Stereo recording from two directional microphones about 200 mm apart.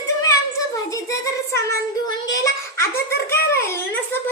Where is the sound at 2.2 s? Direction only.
15° left (ahead or behind).